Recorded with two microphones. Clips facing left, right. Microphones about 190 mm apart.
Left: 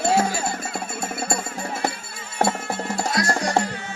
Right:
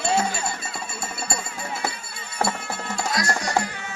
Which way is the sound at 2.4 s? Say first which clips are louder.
Left 4 dB; 40° left (ahead or behind).